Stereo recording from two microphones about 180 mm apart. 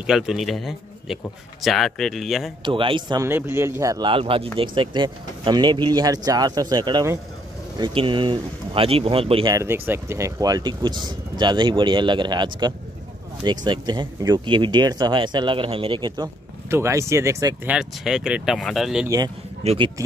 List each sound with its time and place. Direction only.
0.0 s speech: centre (ahead or behind)
2.6 s speech: 30° right (ahead or behind)
3.3 s a man's voice: 15° right (ahead or behind)
4.1 s speech: 30° right (ahead or behind)
9.5 s speech: 15° right (ahead or behind)
16.7 s a man's voice: 15° right (ahead or behind)
17.6 s speech: 5° right (ahead or behind)
19.0 s speech: 20° right (ahead or behind)
19.6 s speech: 35° right (ahead or behind)